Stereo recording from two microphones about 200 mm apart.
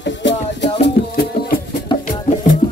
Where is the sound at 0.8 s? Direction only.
55° left (ahead or behind).